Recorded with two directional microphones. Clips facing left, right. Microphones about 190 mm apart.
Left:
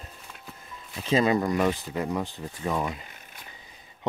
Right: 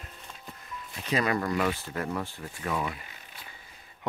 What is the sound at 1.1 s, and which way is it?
Speech, 25° left (ahead or behind).